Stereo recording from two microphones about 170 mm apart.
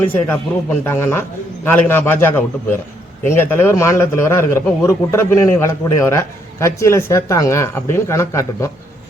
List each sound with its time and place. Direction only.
0.0 s a man's voice: 10° left (ahead or behind)